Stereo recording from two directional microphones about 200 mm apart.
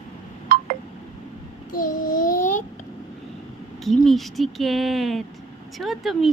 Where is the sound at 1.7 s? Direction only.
45° left (ahead or behind).